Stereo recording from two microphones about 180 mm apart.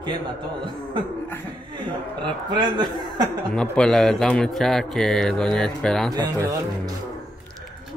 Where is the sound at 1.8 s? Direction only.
25° right (ahead or behind).